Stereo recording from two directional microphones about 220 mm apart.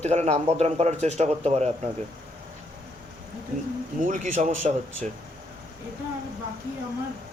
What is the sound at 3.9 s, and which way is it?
Speech, 35° right (ahead or behind).